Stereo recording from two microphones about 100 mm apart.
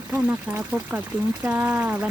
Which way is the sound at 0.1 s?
15° right (ahead or behind).